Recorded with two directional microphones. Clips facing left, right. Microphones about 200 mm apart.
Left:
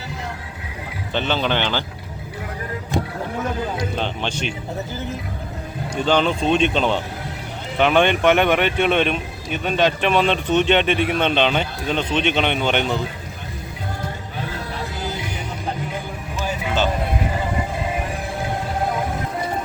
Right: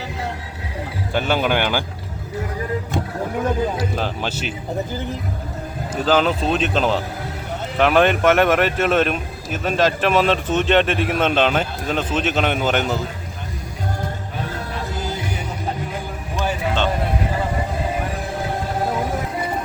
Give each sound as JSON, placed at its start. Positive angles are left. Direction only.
{"t": 1.1, "sound": "speech", "side_deg": -10}
{"t": 3.8, "sound": "speech", "side_deg": -5}
{"t": 5.9, "sound": "speech", "side_deg": -5}